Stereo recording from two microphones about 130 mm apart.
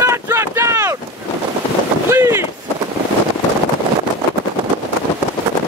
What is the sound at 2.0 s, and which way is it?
Boat, 20° right (ahead or behind).